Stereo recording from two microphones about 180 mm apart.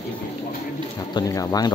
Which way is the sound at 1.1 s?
20° left (ahead or behind).